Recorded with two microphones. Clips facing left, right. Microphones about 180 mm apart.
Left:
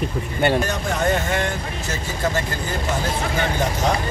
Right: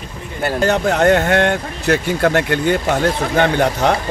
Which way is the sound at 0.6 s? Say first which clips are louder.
Right 8 dB; 70° right (ahead or behind).